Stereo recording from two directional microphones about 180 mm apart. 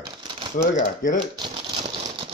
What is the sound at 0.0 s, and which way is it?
Typewriter, 25° right (ahead or behind).